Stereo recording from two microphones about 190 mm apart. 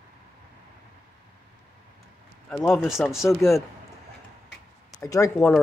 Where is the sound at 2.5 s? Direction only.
Centre (ahead or behind).